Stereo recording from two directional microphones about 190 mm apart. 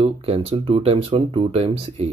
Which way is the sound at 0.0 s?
30° right (ahead or behind).